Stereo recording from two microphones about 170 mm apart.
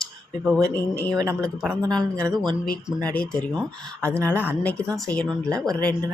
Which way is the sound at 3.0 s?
10° left (ahead or behind).